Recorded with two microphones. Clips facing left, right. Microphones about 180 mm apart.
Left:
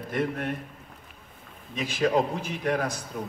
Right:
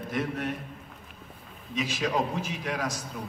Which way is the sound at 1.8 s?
55° left (ahead or behind).